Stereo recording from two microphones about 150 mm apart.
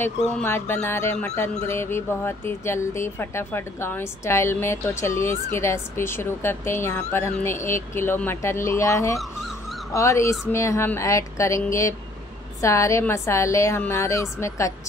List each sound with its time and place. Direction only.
0.4 s a woman's voice: 15° left (ahead or behind)